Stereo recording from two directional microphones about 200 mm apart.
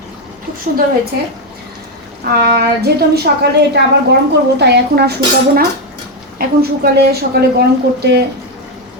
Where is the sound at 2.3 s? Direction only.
50° right (ahead or behind).